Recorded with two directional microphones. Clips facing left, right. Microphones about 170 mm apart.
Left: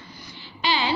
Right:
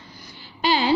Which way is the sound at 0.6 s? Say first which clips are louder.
Right 5 dB; 45° right (ahead or behind).